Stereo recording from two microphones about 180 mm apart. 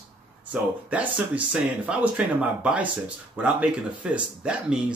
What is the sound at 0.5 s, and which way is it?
Speech, 5° right (ahead or behind).